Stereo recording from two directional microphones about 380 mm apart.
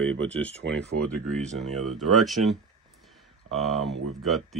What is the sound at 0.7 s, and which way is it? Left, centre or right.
Speech, right.